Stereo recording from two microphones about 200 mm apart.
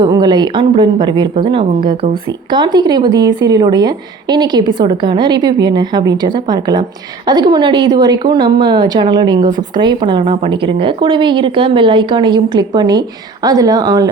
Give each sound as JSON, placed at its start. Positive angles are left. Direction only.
{"t": 0.0, "sound": "speech", "side_deg": -20}